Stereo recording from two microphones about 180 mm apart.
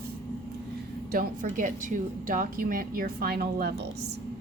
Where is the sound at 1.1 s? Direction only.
50° right (ahead or behind).